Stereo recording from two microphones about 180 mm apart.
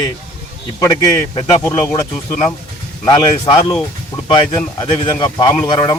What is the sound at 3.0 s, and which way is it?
A man's voice, 20° left (ahead or behind).